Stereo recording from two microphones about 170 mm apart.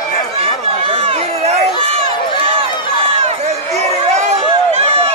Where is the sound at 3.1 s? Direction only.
40° right (ahead or behind).